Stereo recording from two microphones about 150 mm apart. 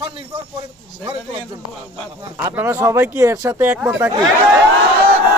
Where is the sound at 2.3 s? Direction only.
15° right (ahead or behind).